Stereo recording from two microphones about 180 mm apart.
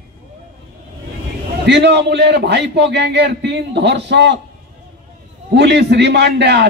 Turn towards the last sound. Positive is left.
turn(degrees=-70)  # may be behind; listen again after turning